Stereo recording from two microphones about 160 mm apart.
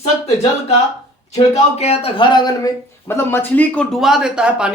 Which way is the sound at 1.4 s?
40° left (ahead or behind).